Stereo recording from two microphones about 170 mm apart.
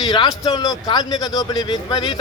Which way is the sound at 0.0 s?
25° left (ahead or behind).